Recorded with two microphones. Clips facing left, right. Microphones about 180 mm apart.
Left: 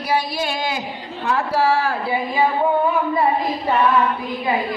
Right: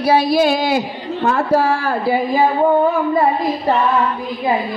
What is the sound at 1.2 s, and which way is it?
Speech, 50° right (ahead or behind).